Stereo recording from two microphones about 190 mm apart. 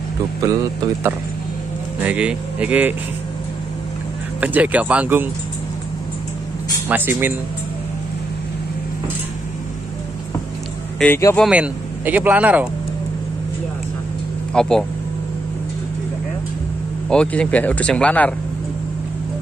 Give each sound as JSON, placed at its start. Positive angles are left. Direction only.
{"t": 0.4, "sound": "speech", "side_deg": -15}
{"t": 2.0, "sound": "speech", "side_deg": -5}
{"t": 4.4, "sound": "speech", "side_deg": -5}
{"t": 6.9, "sound": "speech", "side_deg": -10}
{"t": 11.0, "sound": "speech", "side_deg": 10}
{"t": 11.3, "sound": "speech", "side_deg": -5}
{"t": 14.5, "sound": "speech", "side_deg": 5}
{"t": 17.1, "sound": "speech", "side_deg": 5}